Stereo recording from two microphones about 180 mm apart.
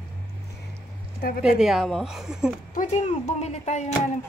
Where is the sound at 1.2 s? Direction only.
55° left (ahead or behind).